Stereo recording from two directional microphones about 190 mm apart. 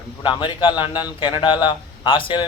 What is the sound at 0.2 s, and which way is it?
A man's voice, 25° left (ahead or behind).